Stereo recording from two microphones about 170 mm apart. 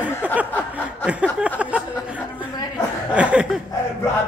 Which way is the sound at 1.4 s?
5° right (ahead or behind).